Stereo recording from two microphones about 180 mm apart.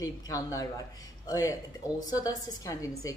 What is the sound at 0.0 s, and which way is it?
A woman's voice, 20° left (ahead or behind).